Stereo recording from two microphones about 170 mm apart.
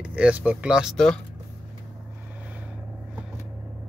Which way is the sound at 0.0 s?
5° right (ahead or behind).